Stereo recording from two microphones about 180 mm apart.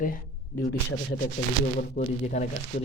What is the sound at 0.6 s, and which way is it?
Speech, 65° left (ahead or behind).